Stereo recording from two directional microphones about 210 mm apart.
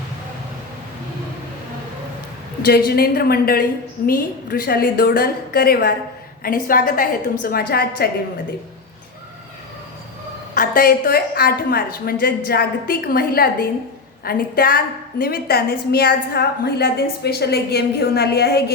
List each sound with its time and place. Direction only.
2.6 s a woman's voice: 45° left (ahead or behind)
10.5 s a woman's voice: 45° left (ahead or behind)